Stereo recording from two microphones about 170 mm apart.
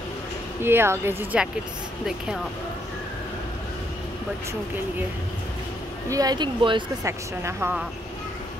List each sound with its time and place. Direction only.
0.6 s speech: 15° right (ahead or behind)
6.0 s speech: 20° right (ahead or behind)
7.1 s speech: 15° right (ahead or behind)